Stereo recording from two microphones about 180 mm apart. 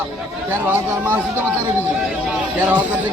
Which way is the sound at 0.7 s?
10° right (ahead or behind).